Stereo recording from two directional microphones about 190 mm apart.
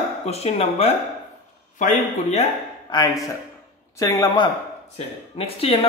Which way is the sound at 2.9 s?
25° left (ahead or behind).